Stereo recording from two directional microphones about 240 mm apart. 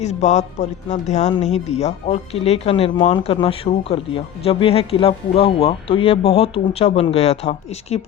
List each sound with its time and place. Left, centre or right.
0.0 s speech: left